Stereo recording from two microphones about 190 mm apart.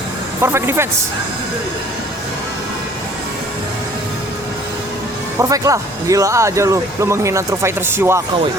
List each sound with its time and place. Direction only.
0.4 s speech: 15° right (ahead or behind)
5.4 s speech: 15° right (ahead or behind)